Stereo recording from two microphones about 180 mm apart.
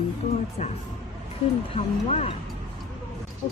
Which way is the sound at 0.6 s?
40° left (ahead or behind).